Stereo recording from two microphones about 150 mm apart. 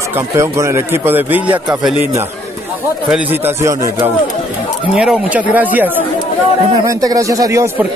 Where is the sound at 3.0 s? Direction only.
10° right (ahead or behind).